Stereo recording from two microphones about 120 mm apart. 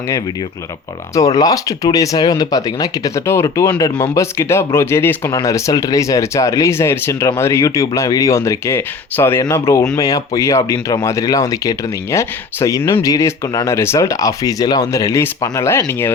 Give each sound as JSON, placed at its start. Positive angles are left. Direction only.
{"t": 1.1, "sound": "speech", "side_deg": 30}